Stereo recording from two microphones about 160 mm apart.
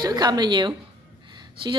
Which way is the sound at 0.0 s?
25° right (ahead or behind).